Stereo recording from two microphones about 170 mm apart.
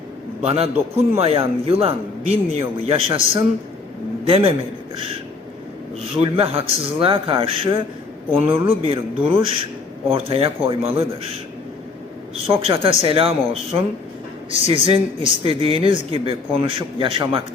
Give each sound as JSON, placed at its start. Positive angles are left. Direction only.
{"t": 0.4, "sound": "speech", "side_deg": -35}
{"t": 4.3, "sound": "speech", "side_deg": -35}
{"t": 6.1, "sound": "speech", "side_deg": -35}
{"t": 12.5, "sound": "speech", "side_deg": -35}